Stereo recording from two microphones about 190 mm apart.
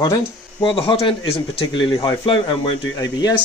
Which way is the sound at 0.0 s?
20° left (ahead or behind).